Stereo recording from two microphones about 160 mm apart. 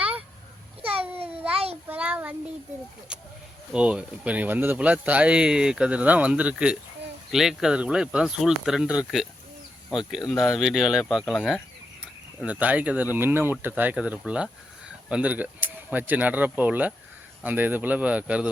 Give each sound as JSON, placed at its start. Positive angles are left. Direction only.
{"t": 0.8, "sound": "babbling", "side_deg": -35}
{"t": 1.9, "sound": "child singing", "side_deg": -10}
{"t": 3.7, "sound": "speech", "side_deg": -5}
{"t": 10.2, "sound": "speech", "side_deg": 0}